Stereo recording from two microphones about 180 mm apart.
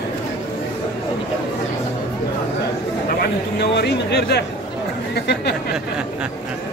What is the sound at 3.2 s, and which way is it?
Speech, 70° left (ahead or behind).